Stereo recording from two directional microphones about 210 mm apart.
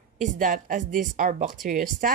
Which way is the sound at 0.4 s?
40° right (ahead or behind).